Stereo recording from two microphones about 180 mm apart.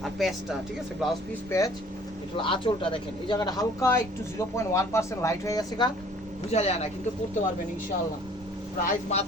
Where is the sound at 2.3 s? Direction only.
30° left (ahead or behind).